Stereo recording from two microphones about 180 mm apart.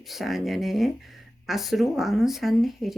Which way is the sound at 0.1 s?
Centre (ahead or behind).